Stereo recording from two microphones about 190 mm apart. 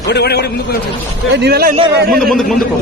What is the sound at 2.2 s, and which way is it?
Speech, centre (ahead or behind).